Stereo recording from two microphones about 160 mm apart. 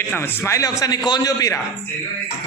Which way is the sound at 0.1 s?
15° left (ahead or behind).